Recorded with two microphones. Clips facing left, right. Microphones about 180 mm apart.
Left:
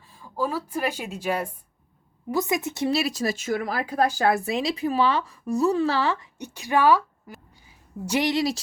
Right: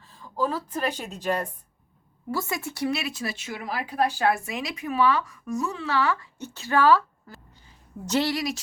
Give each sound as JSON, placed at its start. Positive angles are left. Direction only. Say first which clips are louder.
{"t": 0.1, "sound": "speech", "louder": "even", "side_deg": 10}
{"t": 2.9, "sound": "speech", "louder": "left 5 dB", "side_deg": 40}
{"t": 6.4, "sound": "a woman's voice", "louder": "left 1 dB", "side_deg": 15}